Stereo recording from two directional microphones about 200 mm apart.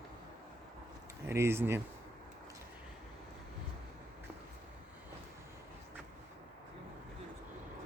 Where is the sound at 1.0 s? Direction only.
15° right (ahead or behind).